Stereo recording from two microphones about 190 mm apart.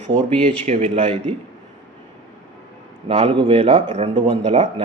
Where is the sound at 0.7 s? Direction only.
35° right (ahead or behind).